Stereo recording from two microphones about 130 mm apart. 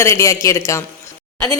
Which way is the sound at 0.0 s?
25° left (ahead or behind).